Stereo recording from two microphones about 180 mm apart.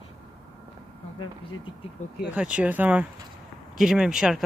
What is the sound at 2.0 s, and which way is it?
Speech, 40° left (ahead or behind).